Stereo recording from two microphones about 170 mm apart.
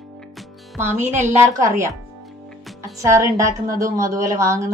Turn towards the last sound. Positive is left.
turn(degrees=-15)  # may be behind; listen again after turning